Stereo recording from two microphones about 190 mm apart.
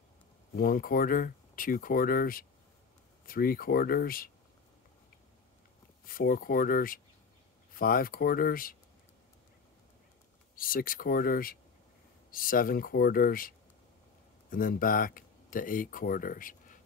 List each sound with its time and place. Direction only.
0.6 s speech: 50° left (ahead or behind)
6.0 s speech: 50° left (ahead or behind)
10.5 s speech: 50° left (ahead or behind)